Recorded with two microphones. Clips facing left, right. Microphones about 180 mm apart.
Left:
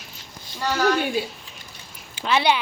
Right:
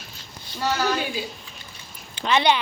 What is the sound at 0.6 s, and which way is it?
Speech, 5° right (ahead or behind).